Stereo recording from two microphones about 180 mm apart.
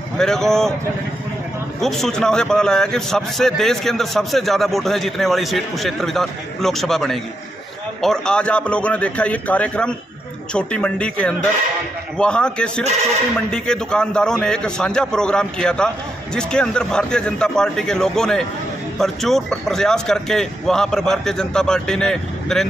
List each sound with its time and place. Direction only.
0.2 s a man's voice: 5° left (ahead or behind)
1.8 s a man's voice: centre (ahead or behind)